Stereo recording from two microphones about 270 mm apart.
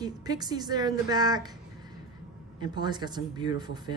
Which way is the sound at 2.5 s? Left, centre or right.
Centre.